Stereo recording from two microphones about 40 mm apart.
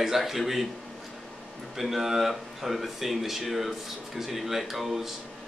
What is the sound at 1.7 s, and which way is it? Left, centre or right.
Speech, centre.